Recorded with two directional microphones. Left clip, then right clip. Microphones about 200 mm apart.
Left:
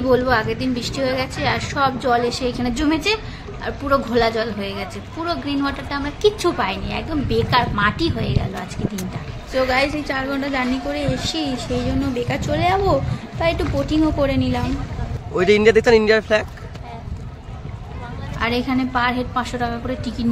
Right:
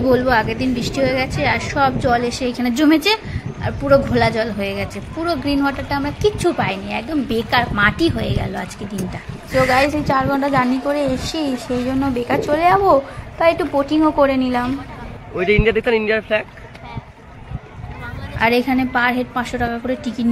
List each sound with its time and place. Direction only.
0.1 s a woman's voice: 15° right (ahead or behind)
9.5 s a woman's voice: centre (ahead or behind)
9.8 s a woman's voice: 20° right (ahead or behind)
15.3 s speech: 15° left (ahead or behind)
18.4 s a woman's voice: 25° right (ahead or behind)